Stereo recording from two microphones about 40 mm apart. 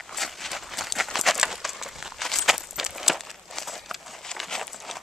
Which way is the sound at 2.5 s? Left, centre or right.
Centre.